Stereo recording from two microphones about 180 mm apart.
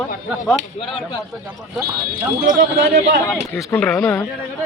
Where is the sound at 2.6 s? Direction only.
60° right (ahead or behind).